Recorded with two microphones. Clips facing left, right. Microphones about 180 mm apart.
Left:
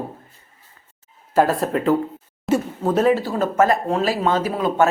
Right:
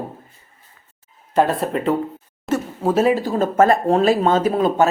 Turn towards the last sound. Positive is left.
turn(degrees=-25)  # may be behind; listen again after turning